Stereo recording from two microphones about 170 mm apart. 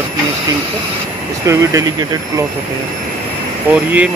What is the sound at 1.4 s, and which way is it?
Speech, 20° right (ahead or behind).